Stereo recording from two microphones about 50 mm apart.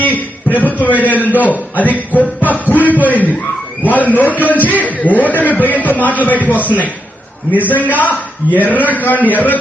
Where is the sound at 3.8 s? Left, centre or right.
Left.